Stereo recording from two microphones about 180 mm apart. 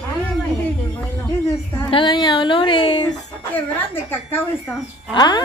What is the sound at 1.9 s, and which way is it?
Speech, 25° left (ahead or behind).